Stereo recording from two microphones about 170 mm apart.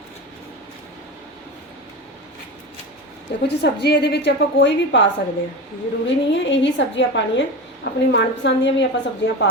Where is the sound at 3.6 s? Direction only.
75° left (ahead or behind).